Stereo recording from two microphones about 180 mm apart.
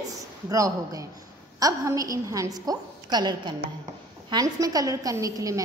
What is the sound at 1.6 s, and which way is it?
A woman's voice, 20° right (ahead or behind).